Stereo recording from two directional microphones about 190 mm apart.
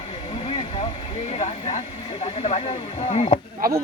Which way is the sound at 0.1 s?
30° left (ahead or behind).